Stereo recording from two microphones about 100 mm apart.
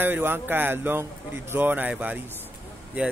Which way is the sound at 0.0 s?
20° right (ahead or behind).